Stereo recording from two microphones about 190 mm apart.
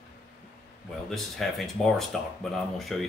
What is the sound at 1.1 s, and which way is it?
Speech, centre (ahead or behind).